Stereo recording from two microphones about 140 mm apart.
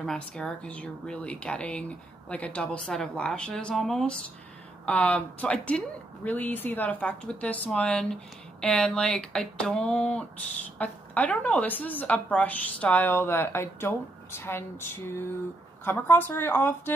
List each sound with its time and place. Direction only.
0.0 s speech: 5° left (ahead or behind)